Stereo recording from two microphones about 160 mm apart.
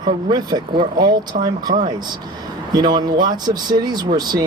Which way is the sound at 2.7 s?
25° right (ahead or behind).